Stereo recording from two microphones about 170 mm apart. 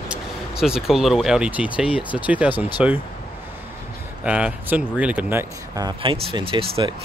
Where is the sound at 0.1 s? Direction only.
5° right (ahead or behind).